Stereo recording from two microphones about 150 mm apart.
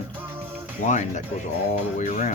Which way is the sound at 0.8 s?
55° left (ahead or behind).